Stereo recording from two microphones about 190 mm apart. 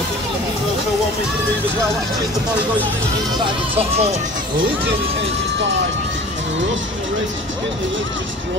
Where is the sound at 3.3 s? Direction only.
30° right (ahead or behind).